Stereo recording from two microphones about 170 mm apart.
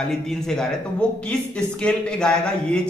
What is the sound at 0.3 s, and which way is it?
A man's voice, 5° left (ahead or behind).